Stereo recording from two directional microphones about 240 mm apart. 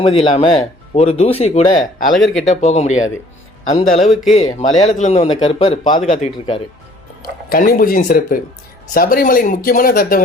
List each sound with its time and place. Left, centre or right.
0.0 s speech: left
4.0 s speech: centre
4.4 s speech: centre
4.8 s speech: left
7.5 s speech: left